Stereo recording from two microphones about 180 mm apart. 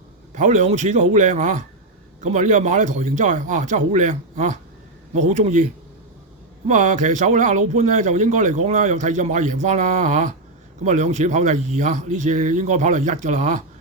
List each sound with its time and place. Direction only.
0.3 s a man's voice: 40° right (ahead or behind)
6.7 s speech: 45° right (ahead or behind)